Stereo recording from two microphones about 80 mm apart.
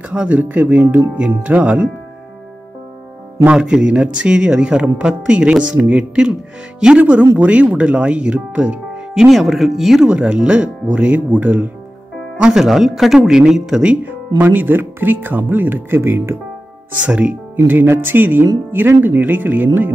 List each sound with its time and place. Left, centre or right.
0.1 s speech: centre
3.4 s speech: centre
12.4 s speech: centre
14.4 s speech: right
17.0 s speech: centre